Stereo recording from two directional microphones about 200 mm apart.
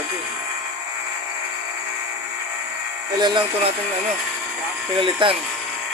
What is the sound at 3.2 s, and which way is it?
Speech, 25° right (ahead or behind).